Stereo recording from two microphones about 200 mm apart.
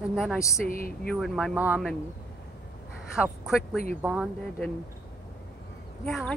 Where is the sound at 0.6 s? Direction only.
45° left (ahead or behind).